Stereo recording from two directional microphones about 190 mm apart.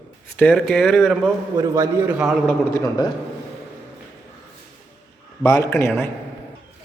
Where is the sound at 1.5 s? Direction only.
15° right (ahead or behind).